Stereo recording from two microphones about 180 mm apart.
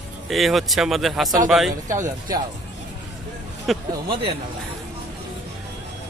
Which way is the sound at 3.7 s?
Centre (ahead or behind).